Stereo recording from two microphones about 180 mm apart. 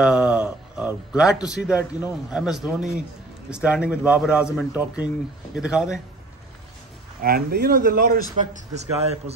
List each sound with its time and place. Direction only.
0.0 s a man's voice: 5° right (ahead or behind)
7.2 s a man's voice: 55° right (ahead or behind)